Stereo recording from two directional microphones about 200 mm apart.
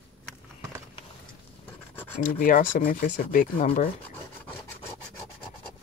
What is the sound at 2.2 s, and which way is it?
Speech, 40° left (ahead or behind).